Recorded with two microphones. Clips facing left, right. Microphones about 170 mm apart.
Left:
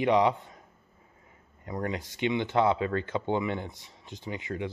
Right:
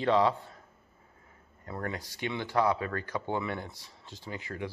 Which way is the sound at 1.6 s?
15° left (ahead or behind).